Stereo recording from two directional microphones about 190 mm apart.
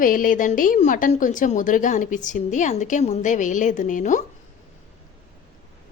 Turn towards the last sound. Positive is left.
turn(degrees=40)  # may be behind; listen again after turning